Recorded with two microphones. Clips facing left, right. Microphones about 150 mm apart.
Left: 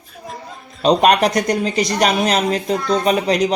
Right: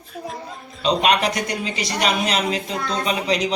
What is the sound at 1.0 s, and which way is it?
Speech, 45° left (ahead or behind).